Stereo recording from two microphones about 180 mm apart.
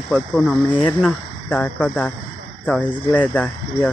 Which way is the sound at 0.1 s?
Centre (ahead or behind).